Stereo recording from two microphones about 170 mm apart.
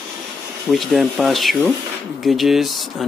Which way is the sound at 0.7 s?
Centre (ahead or behind).